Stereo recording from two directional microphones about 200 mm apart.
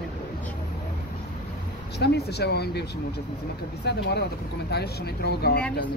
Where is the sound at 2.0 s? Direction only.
55° left (ahead or behind).